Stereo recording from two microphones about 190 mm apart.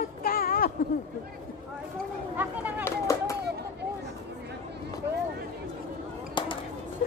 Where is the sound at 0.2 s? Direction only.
50° left (ahead or behind).